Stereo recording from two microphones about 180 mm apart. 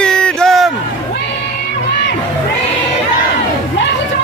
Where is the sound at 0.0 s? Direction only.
5° left (ahead or behind).